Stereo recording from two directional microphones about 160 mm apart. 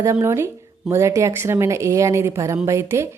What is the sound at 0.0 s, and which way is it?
Speech, 15° right (ahead or behind).